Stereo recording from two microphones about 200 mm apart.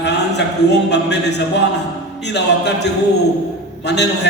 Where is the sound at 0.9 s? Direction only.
60° left (ahead or behind).